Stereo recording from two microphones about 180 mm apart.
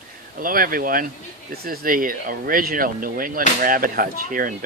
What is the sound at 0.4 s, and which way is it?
Speech, 50° right (ahead or behind).